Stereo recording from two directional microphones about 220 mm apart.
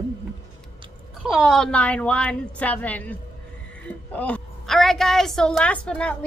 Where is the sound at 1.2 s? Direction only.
Centre (ahead or behind).